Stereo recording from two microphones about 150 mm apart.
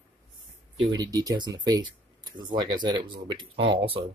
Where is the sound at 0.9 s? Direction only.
25° right (ahead or behind).